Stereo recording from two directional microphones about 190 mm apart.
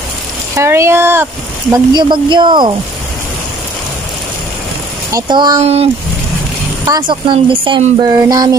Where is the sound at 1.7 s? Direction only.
25° right (ahead or behind).